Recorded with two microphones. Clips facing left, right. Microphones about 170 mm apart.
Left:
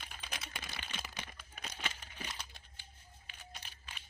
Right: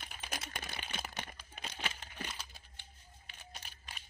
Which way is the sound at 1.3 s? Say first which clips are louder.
Right 2 dB; 30° right (ahead or behind).